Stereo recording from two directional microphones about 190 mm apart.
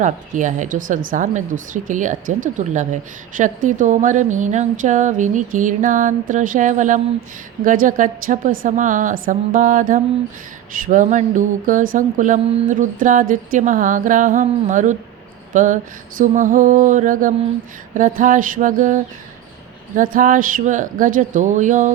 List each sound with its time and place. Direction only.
0.0 s speech: 40° right (ahead or behind)
7.6 s mantra: 45° right (ahead or behind)